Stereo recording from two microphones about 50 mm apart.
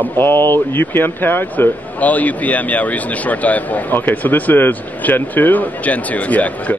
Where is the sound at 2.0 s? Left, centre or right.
Left.